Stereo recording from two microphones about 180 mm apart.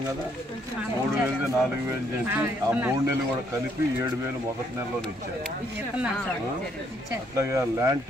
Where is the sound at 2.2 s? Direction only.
10° right (ahead or behind).